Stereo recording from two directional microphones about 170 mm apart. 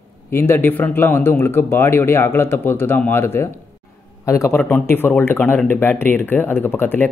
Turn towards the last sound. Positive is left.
turn(degrees=10)  # may be behind; listen again after turning